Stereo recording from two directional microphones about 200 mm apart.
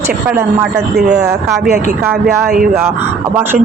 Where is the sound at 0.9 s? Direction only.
50° right (ahead or behind).